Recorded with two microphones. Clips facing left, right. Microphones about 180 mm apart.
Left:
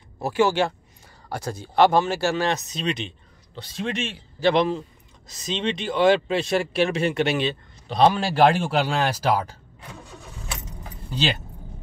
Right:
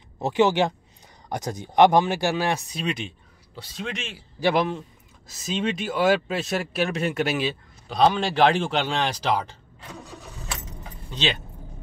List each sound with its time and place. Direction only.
0.2 s speech: 20° right (ahead or behind); by 4.2 s centre (ahead or behind)
4.4 s speech: 10° right (ahead or behind); by 9.6 s 5° left (ahead or behind)